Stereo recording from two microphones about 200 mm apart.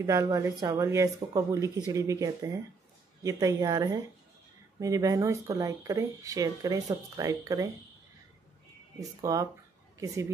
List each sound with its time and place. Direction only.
0.0 s speech: 15° right (ahead or behind)
9.2 s speech: 15° right (ahead or behind)